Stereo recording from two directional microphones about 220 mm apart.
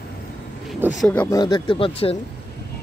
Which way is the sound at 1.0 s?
5° left (ahead or behind).